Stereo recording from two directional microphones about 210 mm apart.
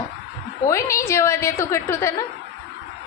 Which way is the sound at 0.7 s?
15° left (ahead or behind).